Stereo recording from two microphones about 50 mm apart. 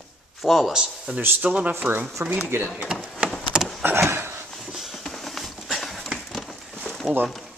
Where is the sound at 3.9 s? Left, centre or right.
Right.